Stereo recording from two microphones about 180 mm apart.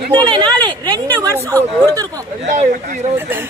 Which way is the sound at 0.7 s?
25° right (ahead or behind).